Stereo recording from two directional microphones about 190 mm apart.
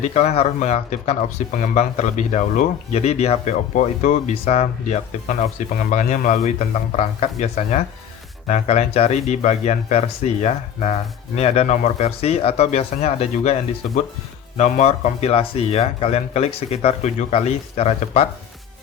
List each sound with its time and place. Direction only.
0.0 s speech: 35° left (ahead or behind)